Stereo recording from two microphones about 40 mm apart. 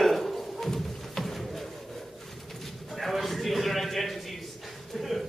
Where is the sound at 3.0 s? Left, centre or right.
Centre.